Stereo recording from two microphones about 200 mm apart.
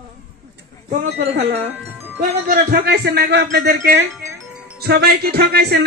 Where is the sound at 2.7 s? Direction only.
55° right (ahead or behind).